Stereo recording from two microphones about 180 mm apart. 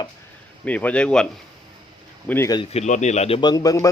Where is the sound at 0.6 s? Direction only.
5° left (ahead or behind).